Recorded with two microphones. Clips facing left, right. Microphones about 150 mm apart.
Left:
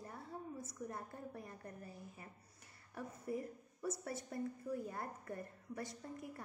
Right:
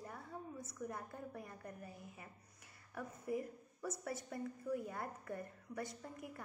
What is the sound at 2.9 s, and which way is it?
A woman's voice, 30° left (ahead or behind).